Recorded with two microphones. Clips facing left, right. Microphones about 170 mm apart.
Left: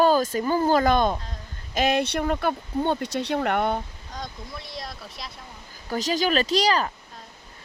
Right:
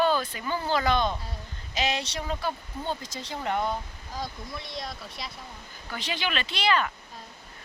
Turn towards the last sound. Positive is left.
turn(degrees=35)  # may be behind; listen again after turning